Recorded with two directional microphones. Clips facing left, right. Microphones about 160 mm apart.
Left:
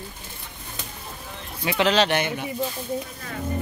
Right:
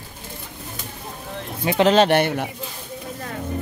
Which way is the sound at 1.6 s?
40° right (ahead or behind).